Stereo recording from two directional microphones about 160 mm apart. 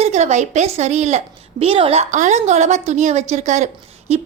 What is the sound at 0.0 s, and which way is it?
A woman's voice, 45° right (ahead or behind).